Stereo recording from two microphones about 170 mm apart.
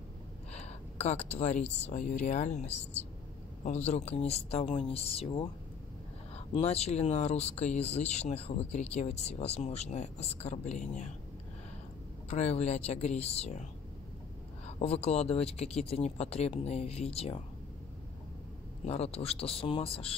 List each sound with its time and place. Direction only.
0.5 s speech: 40° left (ahead or behind)
12.3 s speech: 40° left (ahead or behind)
14.8 s speech: 35° left (ahead or behind)
18.9 s speech: 35° left (ahead or behind)